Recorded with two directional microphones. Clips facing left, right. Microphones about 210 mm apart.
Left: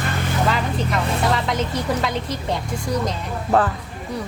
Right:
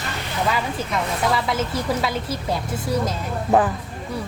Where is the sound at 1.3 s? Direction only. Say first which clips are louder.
Left 1 dB; 5° right (ahead or behind).